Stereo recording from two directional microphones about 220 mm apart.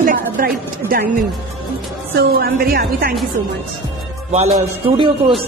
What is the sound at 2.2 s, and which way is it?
Speech, 45° right (ahead or behind).